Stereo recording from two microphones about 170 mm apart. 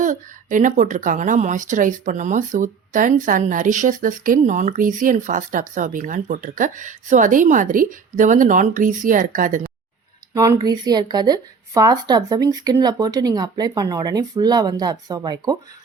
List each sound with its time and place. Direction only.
0.0 s a woman's voice: 50° right (ahead or behind)
10.3 s speech: 20° right (ahead or behind)